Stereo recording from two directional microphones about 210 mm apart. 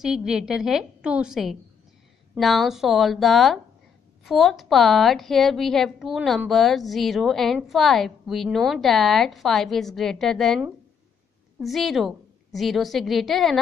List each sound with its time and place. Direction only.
0.0 s a woman's voice: 5° right (ahead or behind)